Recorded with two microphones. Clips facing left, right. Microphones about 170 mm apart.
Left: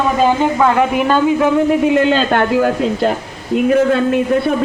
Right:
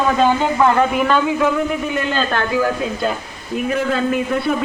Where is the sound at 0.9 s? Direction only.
35° left (ahead or behind).